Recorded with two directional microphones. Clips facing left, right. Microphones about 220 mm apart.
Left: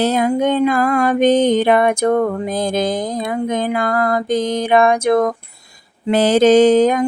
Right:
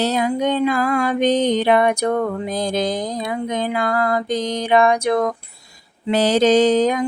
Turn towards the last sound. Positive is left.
turn(degrees=50)  # may be behind; listen again after turning